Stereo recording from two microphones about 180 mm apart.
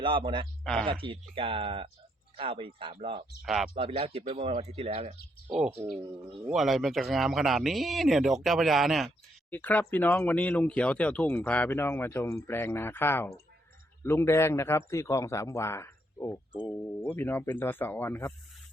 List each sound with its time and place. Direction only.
0.0 s speech: 30° right (ahead or behind)
0.6 s speech: 5° left (ahead or behind)
0.9 s speech: 30° right (ahead or behind)
3.4 s speech: centre (ahead or behind)
3.8 s speech: 30° right (ahead or behind)
5.5 s speech: 5° right (ahead or behind); by 18.3 s 10° left (ahead or behind)